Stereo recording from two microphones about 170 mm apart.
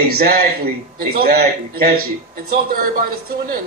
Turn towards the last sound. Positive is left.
turn(degrees=-60)  # may be behind; listen again after turning